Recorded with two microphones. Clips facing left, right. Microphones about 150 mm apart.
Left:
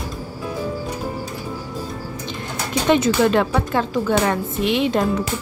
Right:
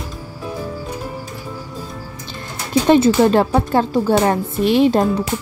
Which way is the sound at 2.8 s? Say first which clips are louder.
Right 4 dB; 35° right (ahead or behind).